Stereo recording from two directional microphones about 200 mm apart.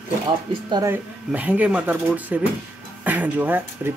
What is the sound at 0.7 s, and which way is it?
Speech, 20° right (ahead or behind).